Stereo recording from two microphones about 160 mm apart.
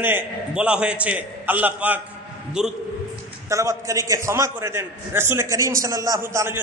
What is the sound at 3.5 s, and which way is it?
A man's voice, 20° right (ahead or behind).